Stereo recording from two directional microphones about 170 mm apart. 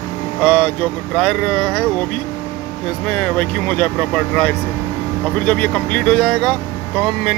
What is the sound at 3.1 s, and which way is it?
Speech, 5° left (ahead or behind).